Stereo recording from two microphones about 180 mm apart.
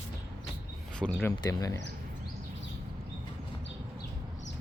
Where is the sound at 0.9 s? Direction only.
5° left (ahead or behind).